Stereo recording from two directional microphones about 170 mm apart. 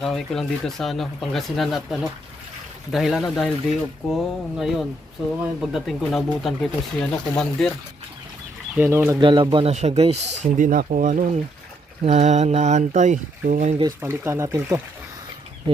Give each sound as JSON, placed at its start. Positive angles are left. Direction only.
{"t": 0.0, "sound": "speech", "side_deg": 0}
{"t": 8.7, "sound": "speech", "side_deg": -10}
{"t": 9.2, "sound": "speech", "side_deg": -30}
{"t": 9.7, "sound": "speech", "side_deg": -40}
{"t": 10.6, "sound": "speech", "side_deg": -55}
{"t": 13.8, "sound": "speech", "side_deg": -15}